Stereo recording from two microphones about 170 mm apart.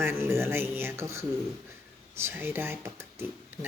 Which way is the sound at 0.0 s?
15° right (ahead or behind).